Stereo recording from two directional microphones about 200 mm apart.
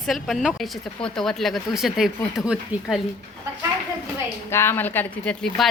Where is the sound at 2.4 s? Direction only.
15° left (ahead or behind).